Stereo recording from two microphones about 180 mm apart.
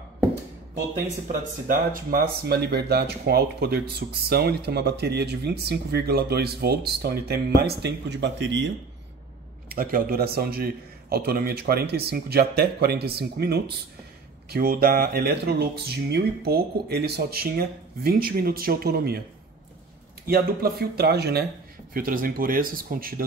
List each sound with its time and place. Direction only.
1.2 s speech: 50° right (ahead or behind); by 8.6 s 85° right
9.8 s speech: 55° right (ahead or behind)
20.2 s speech: 55° right (ahead or behind)
21.9 s speech: 50° right (ahead or behind)